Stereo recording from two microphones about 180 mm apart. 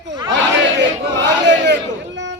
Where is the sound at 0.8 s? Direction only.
80° right.